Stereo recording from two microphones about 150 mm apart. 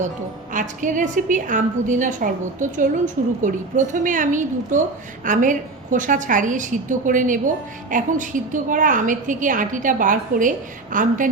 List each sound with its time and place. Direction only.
0.5 s a woman's voice: 55° right (ahead or behind)